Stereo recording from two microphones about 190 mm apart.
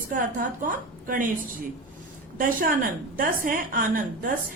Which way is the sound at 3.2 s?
50° right (ahead or behind).